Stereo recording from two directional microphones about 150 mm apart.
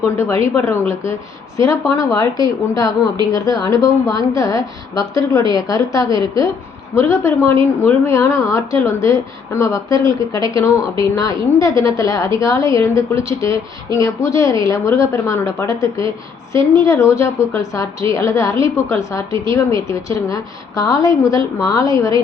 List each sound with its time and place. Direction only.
0.0 s a woman's voice: 20° left (ahead or behind)